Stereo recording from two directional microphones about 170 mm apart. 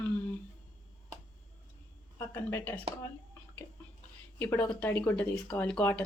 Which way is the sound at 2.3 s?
10° left (ahead or behind).